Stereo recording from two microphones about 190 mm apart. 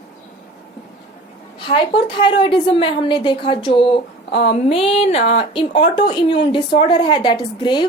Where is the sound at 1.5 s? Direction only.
25° left (ahead or behind).